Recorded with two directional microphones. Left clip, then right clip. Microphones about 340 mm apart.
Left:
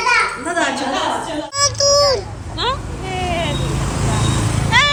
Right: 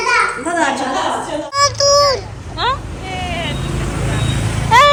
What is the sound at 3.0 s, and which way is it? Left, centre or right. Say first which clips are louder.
Vehicle: left 2 dB; centre.